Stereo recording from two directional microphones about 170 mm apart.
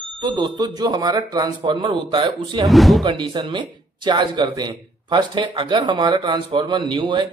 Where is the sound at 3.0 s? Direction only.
25° right (ahead or behind).